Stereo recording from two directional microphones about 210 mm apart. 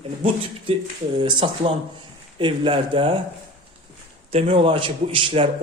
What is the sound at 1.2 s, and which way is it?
A man's voice, 25° right (ahead or behind).